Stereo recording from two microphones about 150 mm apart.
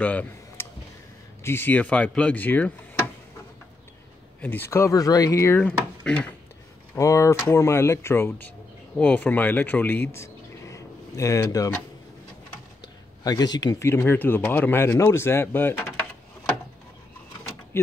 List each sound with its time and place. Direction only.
0.0 s speech: 10° left (ahead or behind)
4.4 s speech: 15° left (ahead or behind)
7.0 s speech: 20° left (ahead or behind)
12.8 s speech: 25° left (ahead or behind)